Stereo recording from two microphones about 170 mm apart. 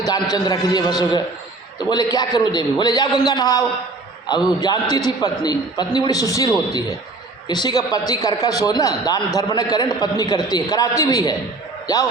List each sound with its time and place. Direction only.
0.3 s a man's voice: 25° left (ahead or behind)